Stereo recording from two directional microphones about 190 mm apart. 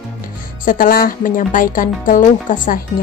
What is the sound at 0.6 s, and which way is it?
Speech, 45° left (ahead or behind).